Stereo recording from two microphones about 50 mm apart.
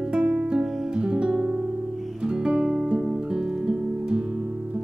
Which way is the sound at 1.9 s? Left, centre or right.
Centre.